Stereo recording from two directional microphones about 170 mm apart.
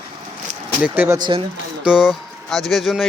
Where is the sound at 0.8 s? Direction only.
10° right (ahead or behind).